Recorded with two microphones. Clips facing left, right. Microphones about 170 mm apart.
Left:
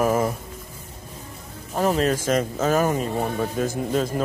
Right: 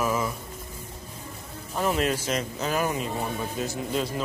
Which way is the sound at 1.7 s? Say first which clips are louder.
Left 4 dB; 40° left (ahead or behind).